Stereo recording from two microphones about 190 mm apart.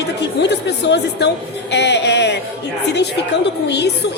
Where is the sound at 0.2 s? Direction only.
65° left (ahead or behind).